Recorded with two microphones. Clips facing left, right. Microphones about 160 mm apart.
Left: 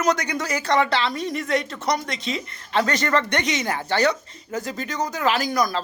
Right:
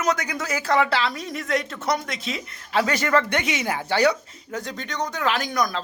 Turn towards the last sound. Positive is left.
turn(degrees=0)  # may be behind; listen again after turning